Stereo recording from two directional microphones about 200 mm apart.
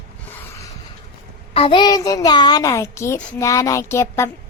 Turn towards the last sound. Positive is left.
turn(degrees=15)  # may be behind; listen again after turning